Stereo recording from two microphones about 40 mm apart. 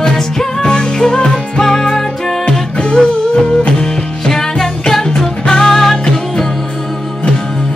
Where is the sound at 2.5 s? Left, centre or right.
Left.